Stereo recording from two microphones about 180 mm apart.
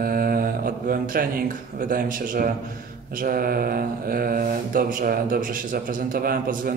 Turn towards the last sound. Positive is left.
turn(degrees=-55)  # may be behind; listen again after turning